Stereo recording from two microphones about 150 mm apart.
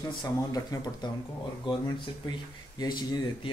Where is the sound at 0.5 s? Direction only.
25° left (ahead or behind).